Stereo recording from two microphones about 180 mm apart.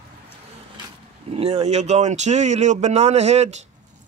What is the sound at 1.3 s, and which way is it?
Speech, 35° right (ahead or behind).